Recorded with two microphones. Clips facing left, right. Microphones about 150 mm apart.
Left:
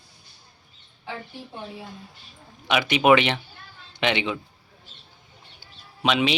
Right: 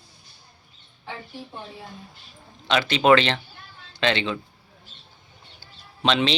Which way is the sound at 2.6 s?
15° left (ahead or behind).